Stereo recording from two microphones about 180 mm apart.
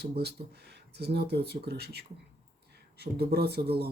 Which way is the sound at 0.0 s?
65° right (ahead or behind).